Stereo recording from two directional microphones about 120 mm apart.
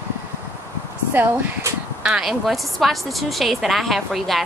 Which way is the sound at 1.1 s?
15° right (ahead or behind).